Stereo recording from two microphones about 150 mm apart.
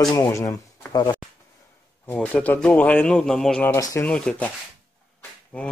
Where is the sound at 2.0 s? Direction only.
10° left (ahead or behind).